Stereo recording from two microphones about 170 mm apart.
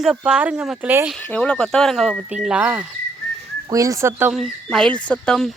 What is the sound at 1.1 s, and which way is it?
Speech, 5° left (ahead or behind).